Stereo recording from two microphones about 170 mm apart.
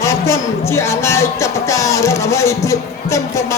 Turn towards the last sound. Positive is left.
turn(degrees=15)  # may be behind; listen again after turning